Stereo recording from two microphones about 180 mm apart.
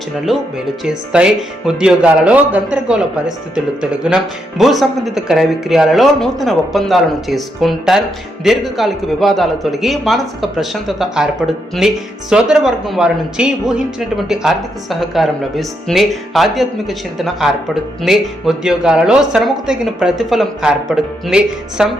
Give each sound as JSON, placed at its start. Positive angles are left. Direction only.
{"t": 1.1, "sound": "speech", "side_deg": -5}